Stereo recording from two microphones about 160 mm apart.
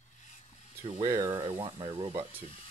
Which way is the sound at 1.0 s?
20° right (ahead or behind).